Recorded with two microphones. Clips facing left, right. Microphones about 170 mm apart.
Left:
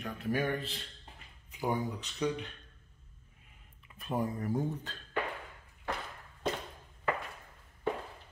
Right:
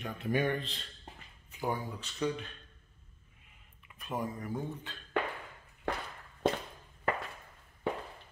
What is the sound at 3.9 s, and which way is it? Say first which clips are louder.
Speech: left 3 dB; 35° left (ahead or behind).